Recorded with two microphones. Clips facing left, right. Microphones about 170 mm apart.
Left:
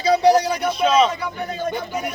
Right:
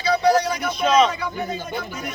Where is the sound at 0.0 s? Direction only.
35° left (ahead or behind).